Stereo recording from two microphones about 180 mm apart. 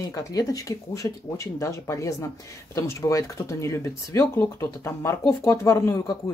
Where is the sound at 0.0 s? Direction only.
20° left (ahead or behind).